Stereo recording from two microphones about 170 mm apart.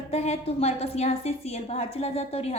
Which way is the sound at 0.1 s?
40° left (ahead or behind).